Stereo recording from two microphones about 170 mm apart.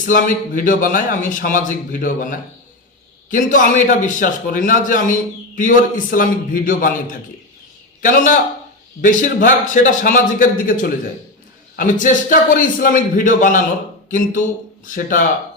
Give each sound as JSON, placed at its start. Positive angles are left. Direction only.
{"t": 0.1, "sound": "a man's voice", "side_deg": 50}
{"t": 14.8, "sound": "a man's voice", "side_deg": 50}